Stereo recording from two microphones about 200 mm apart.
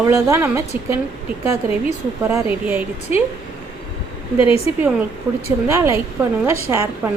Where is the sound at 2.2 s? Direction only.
10° right (ahead or behind).